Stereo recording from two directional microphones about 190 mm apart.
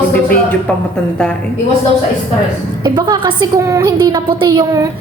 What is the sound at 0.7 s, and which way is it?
Speech, 5° left (ahead or behind).